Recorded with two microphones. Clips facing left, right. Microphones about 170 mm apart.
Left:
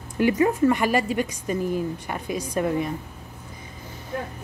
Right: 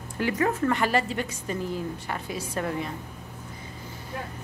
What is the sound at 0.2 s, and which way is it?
A woman's voice, 15° left (ahead or behind).